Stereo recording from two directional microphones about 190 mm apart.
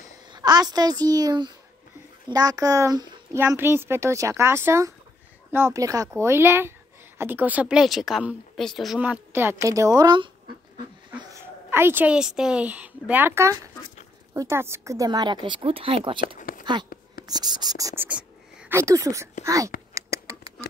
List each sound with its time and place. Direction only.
0.3 s a woman's voice: 20° right (ahead or behind)
11.1 s a woman's voice: 15° right (ahead or behind)
16.3 s a sound: 45° left (ahead or behind)
17.3 s a woman's voice: 20° right (ahead or behind)
19.9 s beatboxing: 15° right (ahead or behind)